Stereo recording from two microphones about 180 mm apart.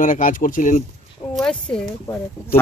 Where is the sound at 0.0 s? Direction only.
45° left (ahead or behind).